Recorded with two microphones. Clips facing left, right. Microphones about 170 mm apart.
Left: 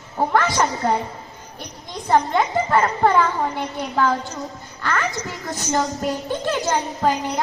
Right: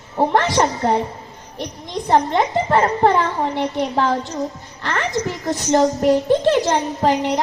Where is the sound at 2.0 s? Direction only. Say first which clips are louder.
Right 2 dB; 30° right (ahead or behind).